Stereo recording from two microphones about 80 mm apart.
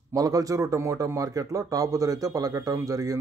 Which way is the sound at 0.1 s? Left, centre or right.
Right.